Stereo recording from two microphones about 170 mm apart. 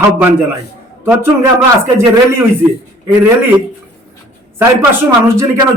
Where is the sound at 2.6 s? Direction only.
10° right (ahead or behind).